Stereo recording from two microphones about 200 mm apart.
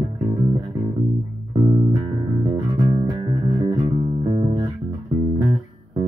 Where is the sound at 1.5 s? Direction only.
20° right (ahead or behind).